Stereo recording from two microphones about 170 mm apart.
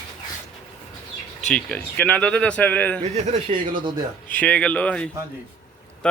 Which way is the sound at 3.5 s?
35° right (ahead or behind).